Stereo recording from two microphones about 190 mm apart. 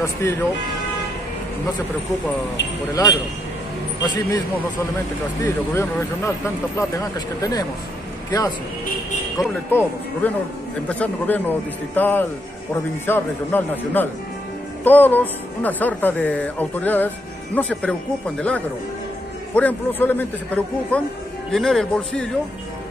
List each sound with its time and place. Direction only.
0.0 s speech: 15° left (ahead or behind)
2.9 s speech: 20° left (ahead or behind)
5.4 s speech: 15° left (ahead or behind)
9.7 s speech: 10° left (ahead or behind)